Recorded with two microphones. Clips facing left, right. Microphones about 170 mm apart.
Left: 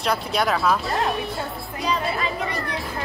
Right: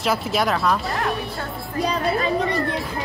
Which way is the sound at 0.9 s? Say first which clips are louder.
Left 1 dB; 25° left (ahead or behind).